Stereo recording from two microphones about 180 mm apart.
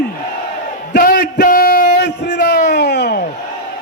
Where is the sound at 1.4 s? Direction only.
50° left (ahead or behind).